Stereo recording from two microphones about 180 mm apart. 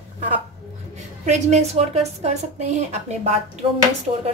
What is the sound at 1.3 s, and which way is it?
Speech, 40° right (ahead or behind).